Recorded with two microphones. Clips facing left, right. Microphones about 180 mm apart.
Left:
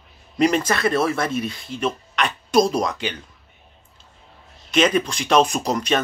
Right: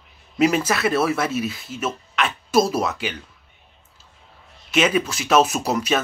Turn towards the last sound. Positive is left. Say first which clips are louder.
# even
turn(degrees=-5)  # may be behind; listen again after turning